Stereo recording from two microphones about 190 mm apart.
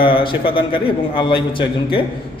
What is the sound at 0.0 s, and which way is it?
A man's voice, 25° left (ahead or behind).